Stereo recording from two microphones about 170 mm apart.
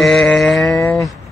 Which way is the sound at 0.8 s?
15° left (ahead or behind).